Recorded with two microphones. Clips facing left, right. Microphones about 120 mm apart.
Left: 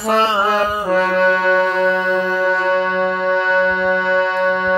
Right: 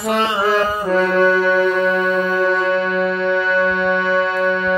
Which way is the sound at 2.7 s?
30° left (ahead or behind).